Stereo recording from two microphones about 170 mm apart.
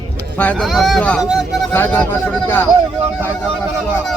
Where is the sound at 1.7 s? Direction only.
10° left (ahead or behind).